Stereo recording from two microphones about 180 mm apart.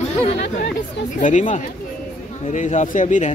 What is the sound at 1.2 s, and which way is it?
Speech, 45° left (ahead or behind).